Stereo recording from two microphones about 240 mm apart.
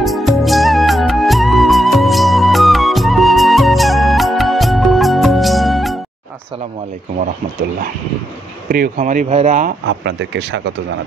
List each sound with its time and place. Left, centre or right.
0.0 s music: centre
8.6 s speech: right
9.8 s speech: right